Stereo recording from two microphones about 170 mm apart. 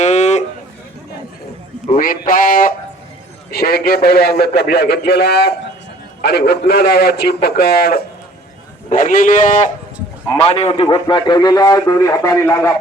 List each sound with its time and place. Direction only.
0.0 s a sound: 40° left (ahead or behind)
1.9 s a man's voice: 55° left (ahead or behind)
8.9 s a man's voice: 55° left (ahead or behind)
10.2 s a man's voice: 35° left (ahead or behind); by 12.7 s 15° left (ahead or behind)